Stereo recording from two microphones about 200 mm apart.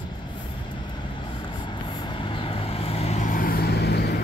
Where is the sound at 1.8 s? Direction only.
25° left (ahead or behind).